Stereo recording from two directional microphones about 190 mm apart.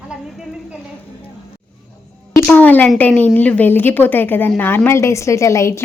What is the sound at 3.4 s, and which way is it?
A woman's voice, 10° left (ahead or behind).